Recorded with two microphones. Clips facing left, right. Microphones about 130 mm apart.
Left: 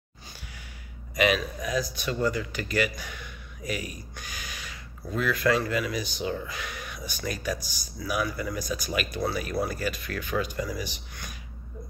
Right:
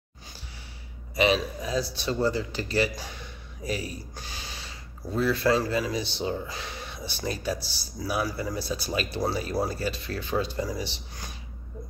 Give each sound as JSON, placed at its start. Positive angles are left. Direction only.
{"t": 1.1, "sound": "a man's voice", "side_deg": -30}